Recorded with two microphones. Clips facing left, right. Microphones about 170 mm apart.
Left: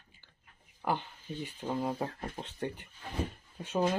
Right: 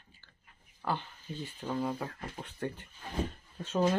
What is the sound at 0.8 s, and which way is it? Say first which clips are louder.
Speech: left 2 dB; 15° left (ahead or behind).